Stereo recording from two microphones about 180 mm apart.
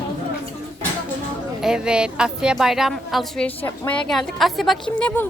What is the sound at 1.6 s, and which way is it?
Speech, 5° right (ahead or behind).